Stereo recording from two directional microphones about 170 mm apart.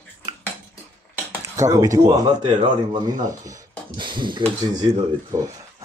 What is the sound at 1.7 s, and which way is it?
Speech, 20° right (ahead or behind).